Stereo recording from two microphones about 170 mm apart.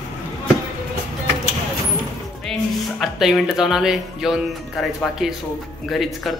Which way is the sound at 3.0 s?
Centre (ahead or behind).